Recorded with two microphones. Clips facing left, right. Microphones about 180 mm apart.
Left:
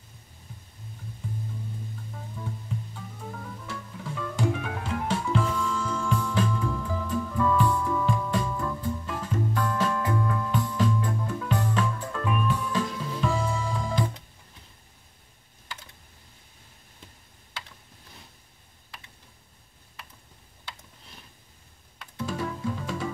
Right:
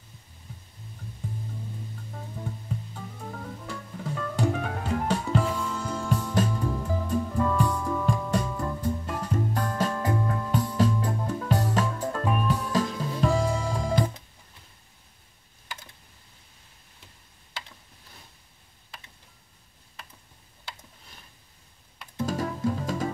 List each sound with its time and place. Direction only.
2.4 s music: 45° right (ahead or behind)
22.1 s music: 40° right (ahead or behind)